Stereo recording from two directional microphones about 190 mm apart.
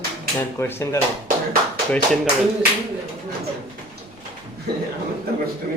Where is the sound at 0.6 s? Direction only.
10° left (ahead or behind).